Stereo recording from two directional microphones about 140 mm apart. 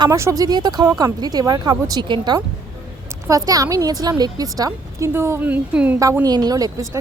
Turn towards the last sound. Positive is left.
turn(degrees=-25)  # may be behind; listen again after turning